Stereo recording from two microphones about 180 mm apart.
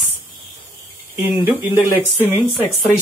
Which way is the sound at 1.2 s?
10° right (ahead or behind).